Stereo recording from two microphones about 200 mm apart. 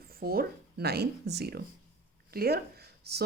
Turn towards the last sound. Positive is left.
turn(degrees=-55)  # may be behind; listen again after turning